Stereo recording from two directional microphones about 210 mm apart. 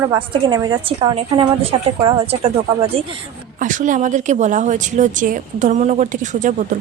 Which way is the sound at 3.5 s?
40° right (ahead or behind).